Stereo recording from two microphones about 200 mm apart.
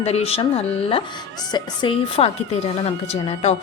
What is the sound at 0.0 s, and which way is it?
A woman's voice, 30° left (ahead or behind).